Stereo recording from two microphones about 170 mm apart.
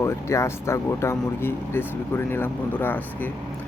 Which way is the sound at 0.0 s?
15° left (ahead or behind).